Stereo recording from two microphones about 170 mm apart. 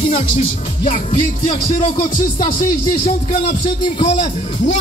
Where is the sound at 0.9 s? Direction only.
35° left (ahead or behind).